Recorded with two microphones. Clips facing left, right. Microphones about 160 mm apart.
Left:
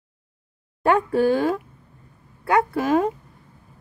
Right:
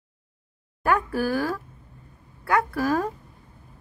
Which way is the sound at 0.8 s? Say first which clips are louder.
Left 5 dB; 25° left (ahead or behind).